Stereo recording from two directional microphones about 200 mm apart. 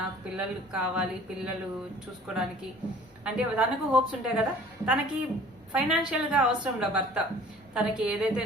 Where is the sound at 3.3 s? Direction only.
5° right (ahead or behind).